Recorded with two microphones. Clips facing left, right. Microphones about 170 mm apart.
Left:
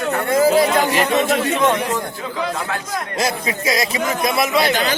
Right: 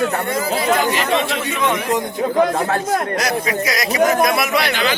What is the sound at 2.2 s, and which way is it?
Speech, 45° right (ahead or behind).